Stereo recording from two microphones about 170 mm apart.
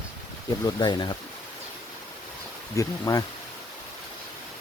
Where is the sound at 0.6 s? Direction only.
25° left (ahead or behind).